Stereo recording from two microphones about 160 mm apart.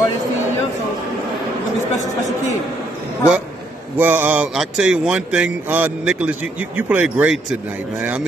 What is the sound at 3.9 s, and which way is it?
A man's voice, 10° right (ahead or behind).